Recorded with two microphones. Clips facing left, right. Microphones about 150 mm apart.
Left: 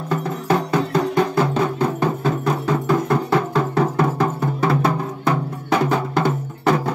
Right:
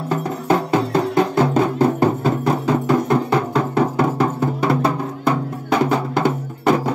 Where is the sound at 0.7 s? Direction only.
25° right (ahead or behind).